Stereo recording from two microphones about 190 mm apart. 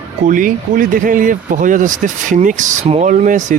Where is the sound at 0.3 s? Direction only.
45° right (ahead or behind).